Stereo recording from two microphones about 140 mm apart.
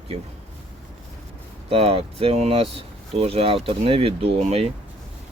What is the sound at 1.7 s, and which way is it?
Speech, 45° right (ahead or behind).